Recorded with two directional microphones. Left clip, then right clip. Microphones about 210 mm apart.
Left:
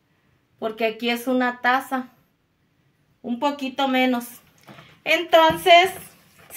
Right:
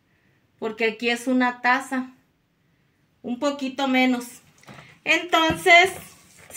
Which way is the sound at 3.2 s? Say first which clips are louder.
Left 1 dB; 20° left (ahead or behind).